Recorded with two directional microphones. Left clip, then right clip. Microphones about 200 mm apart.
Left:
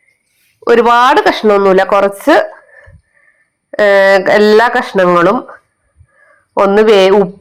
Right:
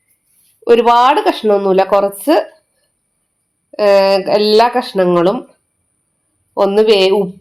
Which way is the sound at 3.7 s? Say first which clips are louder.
Left 3 dB; 15° left (ahead or behind).